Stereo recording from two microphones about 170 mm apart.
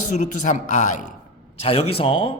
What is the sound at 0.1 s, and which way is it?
Speech, 45° left (ahead or behind).